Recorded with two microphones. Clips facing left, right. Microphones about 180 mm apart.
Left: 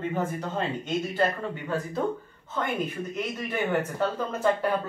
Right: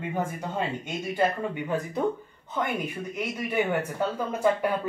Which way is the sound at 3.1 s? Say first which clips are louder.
Right 3 dB; 10° right (ahead or behind).